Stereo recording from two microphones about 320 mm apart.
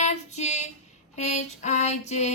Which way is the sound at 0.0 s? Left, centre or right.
Left.